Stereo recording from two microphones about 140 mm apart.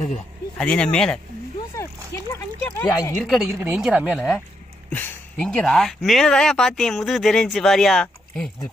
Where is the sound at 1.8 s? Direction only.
20° left (ahead or behind).